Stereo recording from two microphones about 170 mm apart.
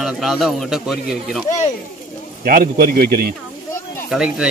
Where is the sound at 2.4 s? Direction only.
60° right (ahead or behind).